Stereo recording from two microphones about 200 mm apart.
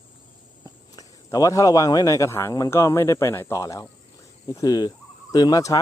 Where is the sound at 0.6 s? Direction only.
20° left (ahead or behind).